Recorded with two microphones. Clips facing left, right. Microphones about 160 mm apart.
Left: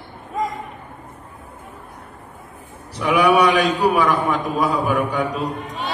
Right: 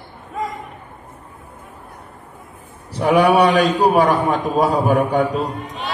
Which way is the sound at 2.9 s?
50° right (ahead or behind).